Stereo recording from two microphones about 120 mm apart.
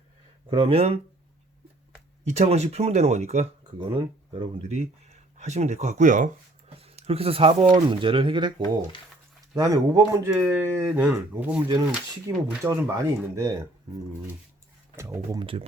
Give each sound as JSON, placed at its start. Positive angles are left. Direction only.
{"t": 0.5, "sound": "speech", "side_deg": -55}
{"t": 2.2, "sound": "speech", "side_deg": -65}
{"t": 3.8, "sound": "speech", "side_deg": -45}
{"t": 4.7, "sound": "speech", "side_deg": -70}
{"t": 6.7, "sound": "speech", "side_deg": -60}
{"t": 11.0, "sound": "speech", "side_deg": -10}
{"t": 12.6, "sound": "speech", "side_deg": -25}
{"t": 14.9, "sound": "speech", "side_deg": -25}
{"t": 15.4, "sound": "speech", "side_deg": -50}